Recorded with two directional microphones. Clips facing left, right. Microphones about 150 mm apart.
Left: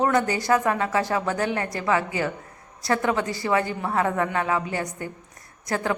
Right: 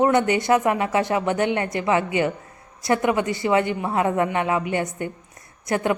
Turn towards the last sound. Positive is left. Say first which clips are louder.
# right 4 dB
turn(degrees=-20)  # may be behind; listen again after turning